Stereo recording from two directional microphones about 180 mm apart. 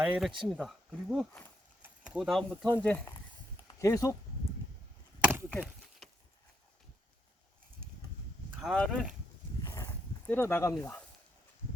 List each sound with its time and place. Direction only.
0.0 s speech: centre (ahead or behind)
1.8 s a sound: 5° right (ahead or behind)
2.7 s speech: 10° left (ahead or behind)
5.2 s chop: 10° right (ahead or behind)
8.6 s speech: 5° left (ahead or behind)
9.6 s dog: 15° left (ahead or behind)